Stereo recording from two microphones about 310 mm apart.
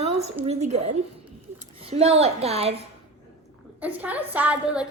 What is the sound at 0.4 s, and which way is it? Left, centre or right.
A child's voice, right.